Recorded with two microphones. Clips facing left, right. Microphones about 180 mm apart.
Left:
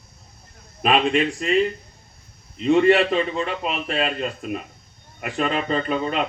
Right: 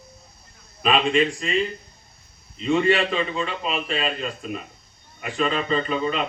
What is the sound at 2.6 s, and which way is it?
Speech, 60° left (ahead or behind).